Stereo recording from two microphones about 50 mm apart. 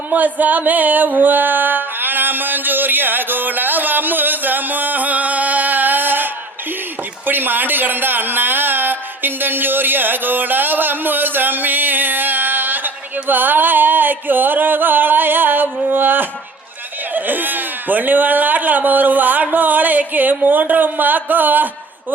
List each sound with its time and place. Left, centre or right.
0.1 s music: right
7.3 s speech: right